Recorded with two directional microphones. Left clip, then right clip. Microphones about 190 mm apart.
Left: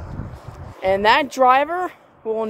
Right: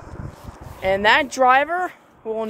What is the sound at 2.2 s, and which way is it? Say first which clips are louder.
Speech: left 3 dB; 15° left (ahead or behind).